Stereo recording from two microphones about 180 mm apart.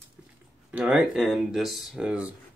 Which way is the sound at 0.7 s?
5° right (ahead or behind).